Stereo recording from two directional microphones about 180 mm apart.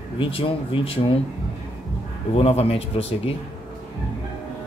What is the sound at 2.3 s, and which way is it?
A man's voice, 35° left (ahead or behind).